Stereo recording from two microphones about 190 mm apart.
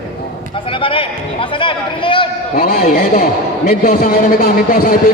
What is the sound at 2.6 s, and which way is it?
A man's voice, 50° left (ahead or behind).